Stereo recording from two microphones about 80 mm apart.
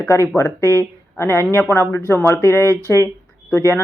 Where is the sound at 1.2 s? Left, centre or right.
Left.